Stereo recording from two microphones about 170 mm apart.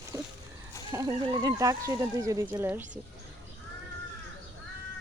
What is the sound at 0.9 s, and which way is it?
Speech, 25° right (ahead or behind).